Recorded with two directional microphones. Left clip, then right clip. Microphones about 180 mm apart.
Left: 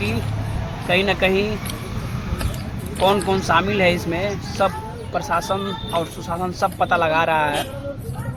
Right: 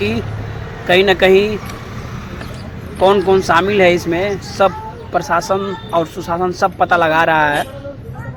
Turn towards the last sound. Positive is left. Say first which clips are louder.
# right 6 dB
turn(degrees=-25)  # may be behind; listen again after turning